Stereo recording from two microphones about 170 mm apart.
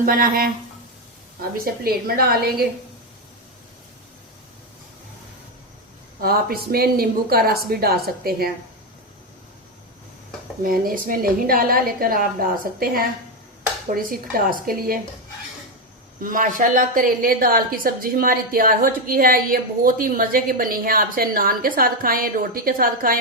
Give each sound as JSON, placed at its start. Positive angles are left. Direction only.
{"t": 0.0, "sound": "a woman's voice", "side_deg": -60}
{"t": 6.2, "sound": "a woman's voice", "side_deg": -60}
{"t": 10.6, "sound": "a woman's voice", "side_deg": -60}
{"t": 16.2, "sound": "a woman's voice", "side_deg": -55}